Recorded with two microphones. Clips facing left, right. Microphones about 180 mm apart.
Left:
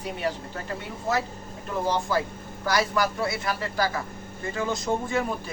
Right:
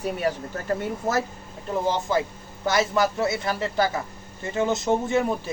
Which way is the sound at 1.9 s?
20° right (ahead or behind).